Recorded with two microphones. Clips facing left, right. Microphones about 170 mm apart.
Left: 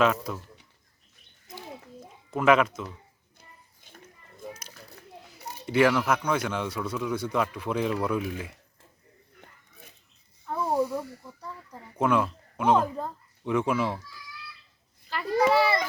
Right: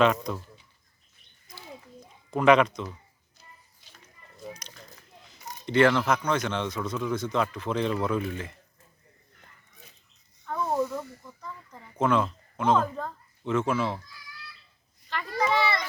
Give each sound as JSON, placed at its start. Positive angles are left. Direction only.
{"t": 0.0, "sound": "speech", "side_deg": 5}
{"t": 2.3, "sound": "speech", "side_deg": 5}
{"t": 3.3, "sound": "a sound", "side_deg": 55}
{"t": 4.5, "sound": "children playing", "side_deg": 5}
{"t": 5.6, "sound": "speech", "side_deg": 10}
{"t": 10.4, "sound": "a sound", "side_deg": 10}
{"t": 15.1, "sound": "a child's voice", "side_deg": 10}